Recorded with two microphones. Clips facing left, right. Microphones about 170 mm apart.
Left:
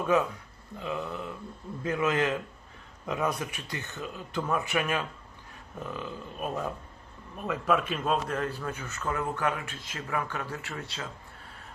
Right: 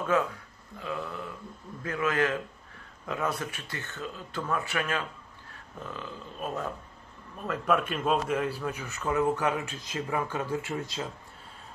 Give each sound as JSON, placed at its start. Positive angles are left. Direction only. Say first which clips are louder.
{"t": 0.7, "sound": "a man's voice", "louder": "left 1 dB", "side_deg": 20}